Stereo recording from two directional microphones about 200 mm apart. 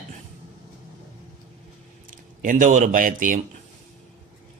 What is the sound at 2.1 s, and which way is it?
Speech, 40° right (ahead or behind).